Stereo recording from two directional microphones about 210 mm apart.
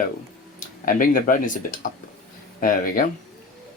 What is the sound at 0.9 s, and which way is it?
Speech, 40° left (ahead or behind).